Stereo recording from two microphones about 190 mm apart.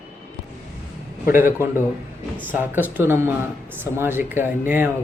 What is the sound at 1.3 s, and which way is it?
Speech, 10° right (ahead or behind).